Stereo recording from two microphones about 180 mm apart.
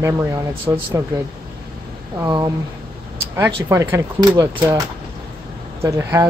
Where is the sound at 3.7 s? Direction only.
15° right (ahead or behind).